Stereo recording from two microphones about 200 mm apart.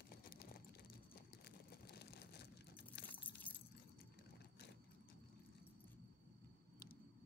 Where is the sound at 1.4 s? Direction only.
55° left (ahead or behind).